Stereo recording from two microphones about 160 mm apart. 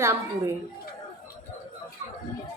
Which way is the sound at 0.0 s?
15° right (ahead or behind).